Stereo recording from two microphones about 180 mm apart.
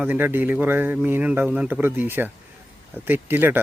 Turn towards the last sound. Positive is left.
turn(degrees=-10)  # may be behind; listen again after turning